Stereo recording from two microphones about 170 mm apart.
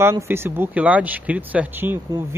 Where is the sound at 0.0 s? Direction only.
15° right (ahead or behind).